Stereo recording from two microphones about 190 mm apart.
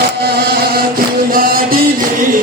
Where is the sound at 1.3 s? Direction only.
50° right (ahead or behind).